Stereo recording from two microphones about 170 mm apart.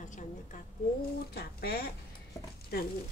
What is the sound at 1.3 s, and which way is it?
Speech, 65° left (ahead or behind).